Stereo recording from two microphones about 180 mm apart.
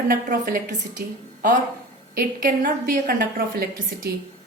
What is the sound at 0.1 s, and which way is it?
A woman's voice, 50° right (ahead or behind).